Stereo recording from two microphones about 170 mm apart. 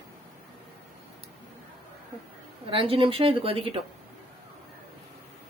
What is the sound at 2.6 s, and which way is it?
Speech, 35° right (ahead or behind).